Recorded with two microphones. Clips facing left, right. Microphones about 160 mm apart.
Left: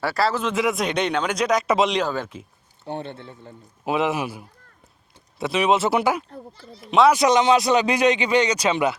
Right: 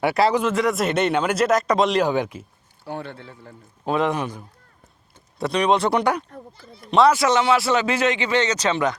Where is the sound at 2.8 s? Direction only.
25° left (ahead or behind).